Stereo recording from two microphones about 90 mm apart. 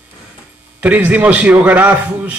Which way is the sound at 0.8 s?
20° right (ahead or behind).